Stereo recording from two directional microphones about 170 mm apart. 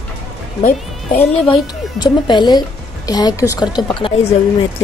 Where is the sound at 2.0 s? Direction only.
25° left (ahead or behind).